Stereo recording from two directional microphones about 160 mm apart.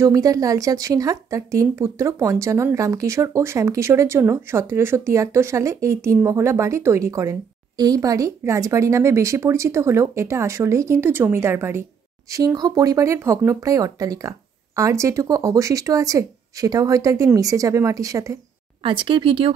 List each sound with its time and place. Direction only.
0.0 s speech: 20° right (ahead or behind)
18.8 s speech: 30° right (ahead or behind)